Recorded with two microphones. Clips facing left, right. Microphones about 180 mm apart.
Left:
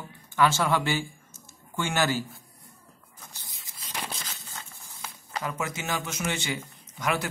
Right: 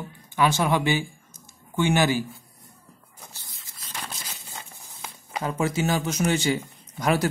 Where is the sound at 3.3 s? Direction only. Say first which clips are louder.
Right 1 dB; 20° left (ahead or behind).